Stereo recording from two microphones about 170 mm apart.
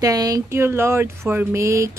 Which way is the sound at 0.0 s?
20° right (ahead or behind).